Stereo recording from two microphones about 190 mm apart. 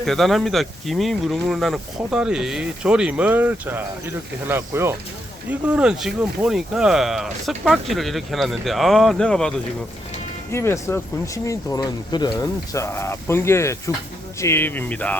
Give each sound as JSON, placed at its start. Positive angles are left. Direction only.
{"t": 0.0, "sound": "speech", "side_deg": 0}